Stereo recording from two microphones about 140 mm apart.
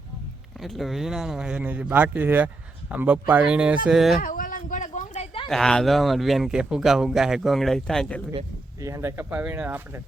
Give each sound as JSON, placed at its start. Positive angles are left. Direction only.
{"t": 0.6, "sound": "speech", "side_deg": 0}
{"t": 4.2, "sound": "a sound", "side_deg": 80}
{"t": 5.5, "sound": "speech", "side_deg": 5}
{"t": 8.8, "sound": "speech", "side_deg": -20}